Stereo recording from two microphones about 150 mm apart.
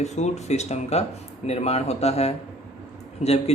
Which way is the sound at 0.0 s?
50° left (ahead or behind).